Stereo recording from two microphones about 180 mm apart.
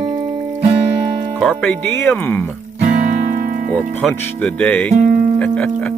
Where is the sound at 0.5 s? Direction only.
40° right (ahead or behind).